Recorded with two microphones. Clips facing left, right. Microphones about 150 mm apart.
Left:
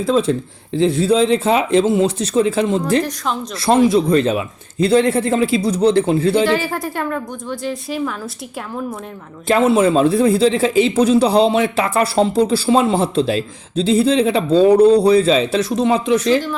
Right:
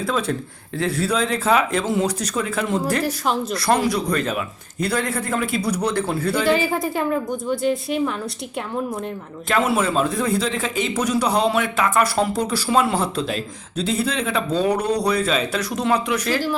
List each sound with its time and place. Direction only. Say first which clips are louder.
0.0 s a man's voice: left 7 dB; 25° left (ahead or behind)
3.0 s a woman's voice: even; 5° right (ahead or behind)
3.6 s a man's voice: left 9 dB; 25° left (ahead or behind)
6.4 s a woman's voice: left 2 dB; centre (ahead or behind)
9.5 s a man's voice: left 7 dB; 30° left (ahead or behind)